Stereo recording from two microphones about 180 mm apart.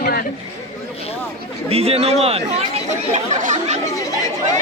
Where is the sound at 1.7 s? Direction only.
35° right (ahead or behind).